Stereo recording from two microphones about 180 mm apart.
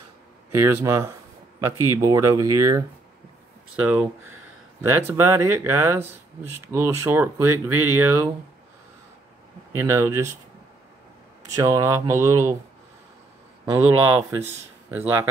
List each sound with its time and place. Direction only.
0.5 s speech: 15° right (ahead or behind)
9.8 s speech: 15° right (ahead or behind)
11.4 s speech: 20° right (ahead or behind)
13.7 s speech: 15° right (ahead or behind)